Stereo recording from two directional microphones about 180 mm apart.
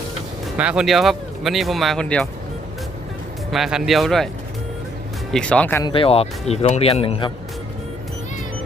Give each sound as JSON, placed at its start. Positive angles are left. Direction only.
{"t": 0.5, "sound": "speech", "side_deg": -5}
{"t": 3.5, "sound": "speech", "side_deg": 0}
{"t": 5.3, "sound": "speech", "side_deg": 5}
{"t": 5.8, "sound": "speech", "side_deg": 30}